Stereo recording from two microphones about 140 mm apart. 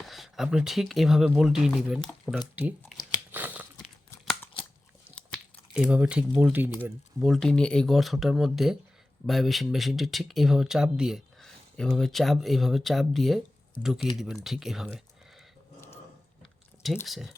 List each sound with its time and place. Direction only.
0.0 s speech: centre (ahead or behind)
3.3 s a sound: 10° right (ahead or behind)
5.7 s speech: 10° right (ahead or behind)
7.2 s speech: centre (ahead or behind)
16.4 s squish: centre (ahead or behind)
17.1 s speech: centre (ahead or behind)